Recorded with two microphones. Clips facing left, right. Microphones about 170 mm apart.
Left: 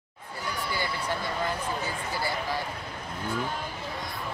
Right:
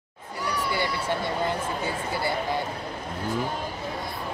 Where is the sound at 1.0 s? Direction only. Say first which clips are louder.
Right 4 dB; 25° right (ahead or behind).